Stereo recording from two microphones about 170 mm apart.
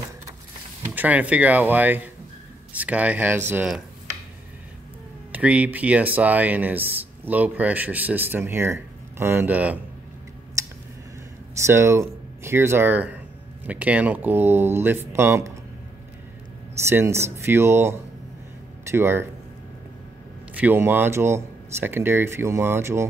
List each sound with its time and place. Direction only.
0.9 s speech: 10° right (ahead or behind)
5.3 s speech: 10° right (ahead or behind)
10.6 s tick: 15° right (ahead or behind)
11.6 s speech: 15° right (ahead or behind)
16.8 s speech: 15° right (ahead or behind)
20.5 s speech: 10° right (ahead or behind)